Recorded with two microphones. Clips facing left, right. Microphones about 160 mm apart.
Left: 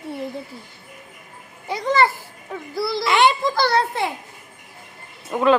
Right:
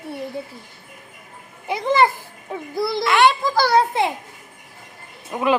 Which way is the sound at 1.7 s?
20° right (ahead or behind).